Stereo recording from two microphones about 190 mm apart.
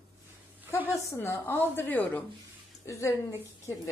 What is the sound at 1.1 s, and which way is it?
A woman's voice, 10° left (ahead or behind).